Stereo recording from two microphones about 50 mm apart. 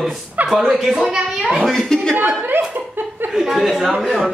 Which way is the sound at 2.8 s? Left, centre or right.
Right.